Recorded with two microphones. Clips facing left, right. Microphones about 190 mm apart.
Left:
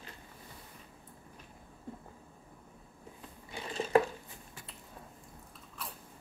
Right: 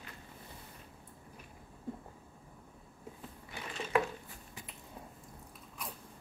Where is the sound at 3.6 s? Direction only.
35° left (ahead or behind).